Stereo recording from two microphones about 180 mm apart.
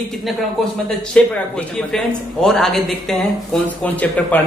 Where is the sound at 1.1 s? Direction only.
5° left (ahead or behind).